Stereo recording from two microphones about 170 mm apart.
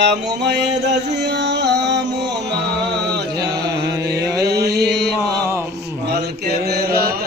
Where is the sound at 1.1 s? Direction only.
85° right.